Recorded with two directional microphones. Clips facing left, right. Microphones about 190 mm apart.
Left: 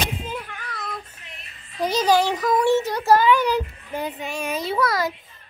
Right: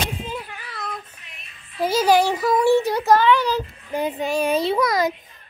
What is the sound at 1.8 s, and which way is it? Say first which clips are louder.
Child singing: right 2 dB; 5° right (ahead or behind).